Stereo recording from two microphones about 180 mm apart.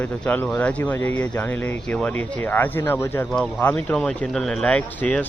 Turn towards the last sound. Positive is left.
turn(degrees=10)  # may be behind; listen again after turning